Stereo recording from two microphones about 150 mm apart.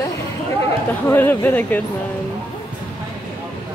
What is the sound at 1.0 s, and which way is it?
Speech, 15° left (ahead or behind).